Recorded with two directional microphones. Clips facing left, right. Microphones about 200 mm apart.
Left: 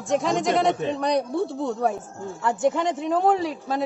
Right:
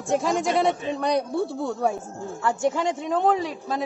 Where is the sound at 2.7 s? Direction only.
5° left (ahead or behind).